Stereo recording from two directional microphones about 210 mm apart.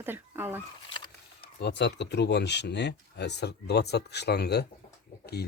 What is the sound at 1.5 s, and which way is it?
Speech, 55° left (ahead or behind).